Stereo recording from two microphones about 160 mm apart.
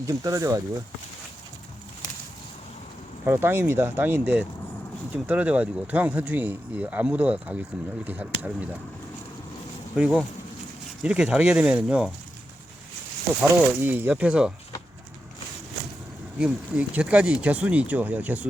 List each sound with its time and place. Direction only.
0.0 s speech: 20° right (ahead or behind)
3.2 s speech: 15° right (ahead or behind)
9.9 s speech: 5° right (ahead or behind)
13.4 s speech: 10° right (ahead or behind)
16.4 s speech: 5° right (ahead or behind)